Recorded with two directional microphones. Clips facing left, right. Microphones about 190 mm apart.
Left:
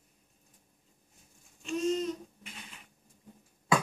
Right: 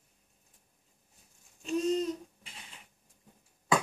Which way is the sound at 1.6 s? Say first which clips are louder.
Right 1 dB; 35° right (ahead or behind).